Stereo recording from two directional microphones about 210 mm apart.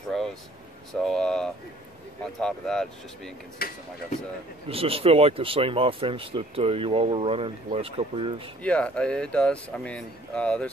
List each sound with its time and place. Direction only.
0.1 s vehicle: centre (ahead or behind)
1.0 s speech: 5° left (ahead or behind)
3.6 s speech: 45° left (ahead or behind)
4.6 s speech: 25° right (ahead or behind)
8.6 s speech: 5° left (ahead or behind)